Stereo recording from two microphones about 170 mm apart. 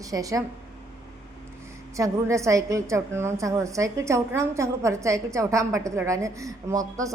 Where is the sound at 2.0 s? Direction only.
15° right (ahead or behind).